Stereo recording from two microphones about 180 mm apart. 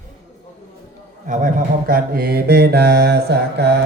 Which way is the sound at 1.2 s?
45° right (ahead or behind).